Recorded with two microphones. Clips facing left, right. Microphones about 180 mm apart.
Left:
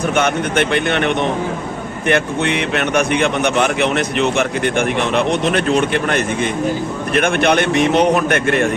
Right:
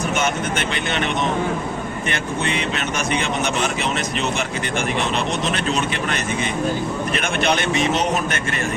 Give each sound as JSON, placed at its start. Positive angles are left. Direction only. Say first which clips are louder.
{"t": 0.2, "sound": "speech", "louder": "left 6 dB", "side_deg": 60}